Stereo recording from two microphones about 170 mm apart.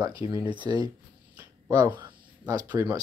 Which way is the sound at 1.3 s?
20° right (ahead or behind).